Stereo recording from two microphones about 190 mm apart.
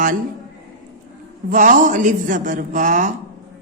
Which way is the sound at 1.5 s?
40° right (ahead or behind).